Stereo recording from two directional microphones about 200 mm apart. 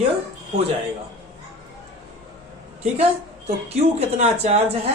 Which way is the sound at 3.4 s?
30° right (ahead or behind).